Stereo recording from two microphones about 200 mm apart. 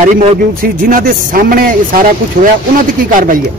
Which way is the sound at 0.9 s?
45° right (ahead or behind).